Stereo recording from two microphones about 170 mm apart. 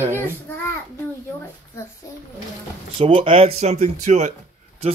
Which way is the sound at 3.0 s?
30° right (ahead or behind).